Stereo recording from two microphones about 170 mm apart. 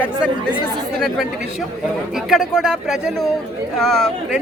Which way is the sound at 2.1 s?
Centre (ahead or behind).